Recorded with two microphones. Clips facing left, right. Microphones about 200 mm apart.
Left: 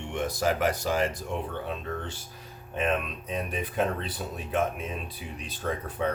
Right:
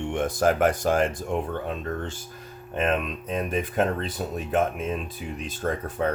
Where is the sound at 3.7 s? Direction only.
45° right (ahead or behind).